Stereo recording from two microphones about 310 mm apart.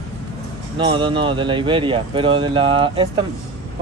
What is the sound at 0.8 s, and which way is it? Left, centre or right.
Speech, centre.